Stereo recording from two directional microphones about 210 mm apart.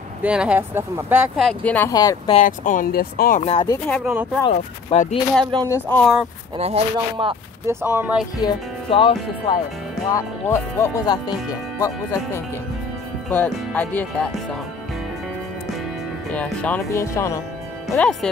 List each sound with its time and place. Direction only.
0.2 s speech: 5° right (ahead or behind); by 2.4 s 20° left (ahead or behind)
2.4 s speech: 40° left (ahead or behind)
3.4 s speech: 25° left (ahead or behind)
3.9 s speech: 5° right (ahead or behind)
4.4 s speech: 25° left (ahead or behind)
5.4 s speech: 20° right (ahead or behind)
5.9 s speech: 5° left (ahead or behind)
6.5 s speech: 25° right (ahead or behind)
7.6 s speech: 10° right (ahead or behind)
8.4 s music: 20° left (ahead or behind)
10.1 s speech: 15° left (ahead or behind)
13.3 s speech: 5° left (ahead or behind)
16.3 s speech: 5° left (ahead or behind)